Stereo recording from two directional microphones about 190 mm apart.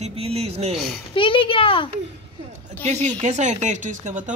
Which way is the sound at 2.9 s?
40° right (ahead or behind).